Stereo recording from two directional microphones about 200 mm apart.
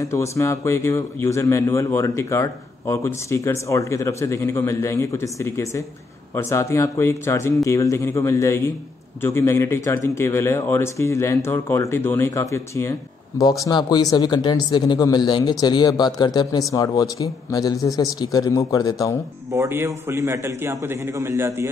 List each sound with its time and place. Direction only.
0.0 s speech: 15° left (ahead or behind)
19.5 s a man's voice: 15° right (ahead or behind)